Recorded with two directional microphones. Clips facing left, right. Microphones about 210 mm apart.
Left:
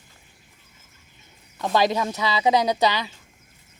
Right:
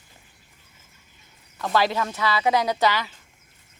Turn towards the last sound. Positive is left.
turn(degrees=15)  # may be behind; listen again after turning